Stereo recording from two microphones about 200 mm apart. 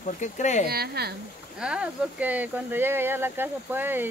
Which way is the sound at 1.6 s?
5° right (ahead or behind).